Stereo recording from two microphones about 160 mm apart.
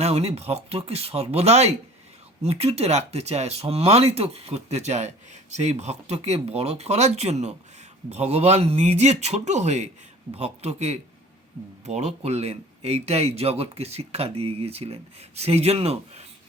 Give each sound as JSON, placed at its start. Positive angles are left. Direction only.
{"t": 0.0, "sound": "speech", "side_deg": -40}